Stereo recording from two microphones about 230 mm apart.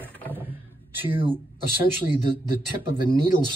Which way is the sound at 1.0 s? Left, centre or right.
Right.